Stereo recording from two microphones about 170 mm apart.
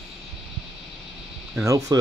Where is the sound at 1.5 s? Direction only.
20° right (ahead or behind).